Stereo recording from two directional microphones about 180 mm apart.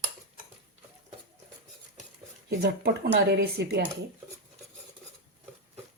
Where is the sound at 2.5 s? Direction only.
60° right (ahead or behind).